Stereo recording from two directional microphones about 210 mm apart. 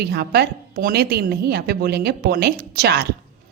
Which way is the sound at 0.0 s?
50° right (ahead or behind).